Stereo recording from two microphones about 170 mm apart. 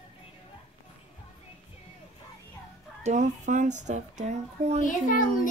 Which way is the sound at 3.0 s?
45° right (ahead or behind).